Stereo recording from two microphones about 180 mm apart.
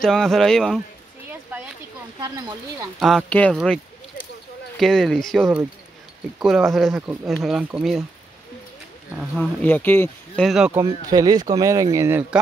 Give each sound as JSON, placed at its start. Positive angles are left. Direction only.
{"t": 0.0, "sound": "speech", "side_deg": 0}
{"t": 2.1, "sound": "speech", "side_deg": -20}
{"t": 3.0, "sound": "speech", "side_deg": 0}
{"t": 3.5, "sound": "a sound", "side_deg": 5}
{"t": 4.7, "sound": "speech", "side_deg": 0}
{"t": 9.4, "sound": "speech", "side_deg": 10}
{"t": 10.8, "sound": "speech", "side_deg": -20}